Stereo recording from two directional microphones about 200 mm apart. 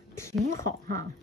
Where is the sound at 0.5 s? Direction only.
15° left (ahead or behind).